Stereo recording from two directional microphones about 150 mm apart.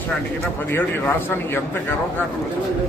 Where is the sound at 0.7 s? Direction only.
15° left (ahead or behind).